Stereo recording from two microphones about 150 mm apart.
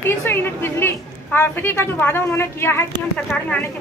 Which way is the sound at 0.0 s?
15° left (ahead or behind).